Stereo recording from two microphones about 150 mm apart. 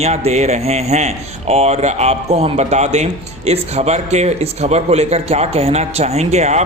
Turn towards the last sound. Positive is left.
turn(degrees=-50)  # may be behind; listen again after turning